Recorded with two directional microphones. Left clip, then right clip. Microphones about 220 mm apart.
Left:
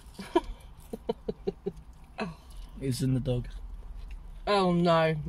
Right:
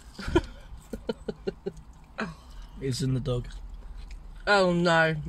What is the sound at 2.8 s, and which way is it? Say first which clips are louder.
Speech: right 1 dB; 20° left (ahead or behind).